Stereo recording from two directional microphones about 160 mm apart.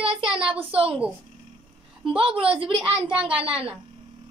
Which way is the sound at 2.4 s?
35° right (ahead or behind).